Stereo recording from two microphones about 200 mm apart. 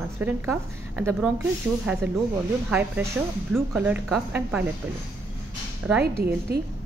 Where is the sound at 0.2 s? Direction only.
10° right (ahead or behind).